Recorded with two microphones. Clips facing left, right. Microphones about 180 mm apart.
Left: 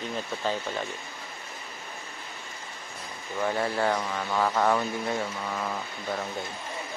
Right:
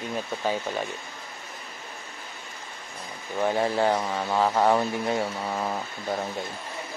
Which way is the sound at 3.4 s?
15° right (ahead or behind).